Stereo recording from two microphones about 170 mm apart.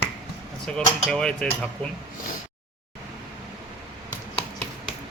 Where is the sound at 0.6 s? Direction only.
5° left (ahead or behind).